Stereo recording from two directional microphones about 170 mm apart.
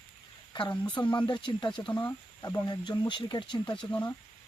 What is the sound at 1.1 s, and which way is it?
Speech, 25° left (ahead or behind).